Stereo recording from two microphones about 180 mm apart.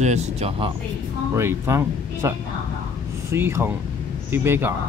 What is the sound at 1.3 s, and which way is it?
Speech, 15° right (ahead or behind).